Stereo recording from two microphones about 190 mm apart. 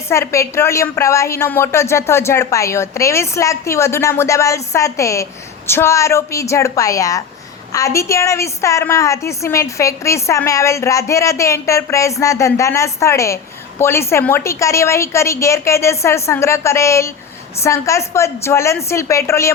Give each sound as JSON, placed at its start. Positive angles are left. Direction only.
{"t": 0.1, "sound": "a woman's voice", "side_deg": 15}